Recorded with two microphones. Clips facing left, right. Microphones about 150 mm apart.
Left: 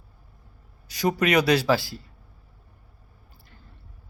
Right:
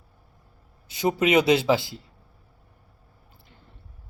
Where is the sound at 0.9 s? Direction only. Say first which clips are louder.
Right 1 dB; 20° right (ahead or behind).